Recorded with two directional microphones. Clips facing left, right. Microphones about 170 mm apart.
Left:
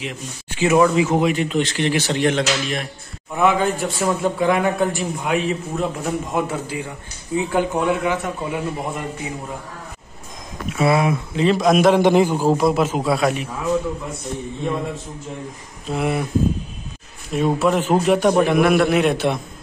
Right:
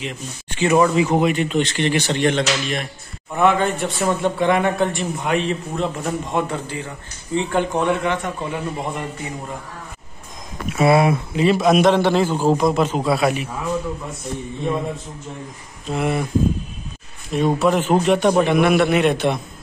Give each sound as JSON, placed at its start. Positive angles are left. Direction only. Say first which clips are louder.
{"t": 0.0, "sound": "a man's voice", "louder": "even", "side_deg": 5}
{"t": 10.8, "sound": "speech", "louder": "right 2 dB", "side_deg": -30}
{"t": 11.3, "sound": "a man's voice", "louder": "even", "side_deg": -5}
{"t": 11.9, "sound": "a man's voice", "louder": "left 2 dB", "side_deg": 15}
{"t": 15.9, "sound": "a man's voice", "louder": "even", "side_deg": 0}
{"t": 17.3, "sound": "a man's voice", "louder": "right 1 dB", "side_deg": 0}